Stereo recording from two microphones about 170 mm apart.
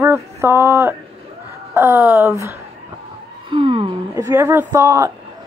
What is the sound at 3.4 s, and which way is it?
Speech, 30° right (ahead or behind).